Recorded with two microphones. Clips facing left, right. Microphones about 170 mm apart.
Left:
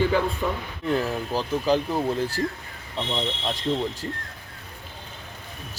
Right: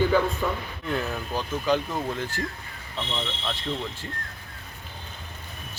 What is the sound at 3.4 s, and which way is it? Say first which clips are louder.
Speech: left 5 dB; 40° left (ahead or behind).